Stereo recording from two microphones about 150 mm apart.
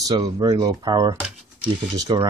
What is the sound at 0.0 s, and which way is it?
Speech, 25° right (ahead or behind).